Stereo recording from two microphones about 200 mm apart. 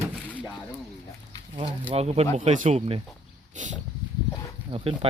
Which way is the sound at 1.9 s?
30° right (ahead or behind).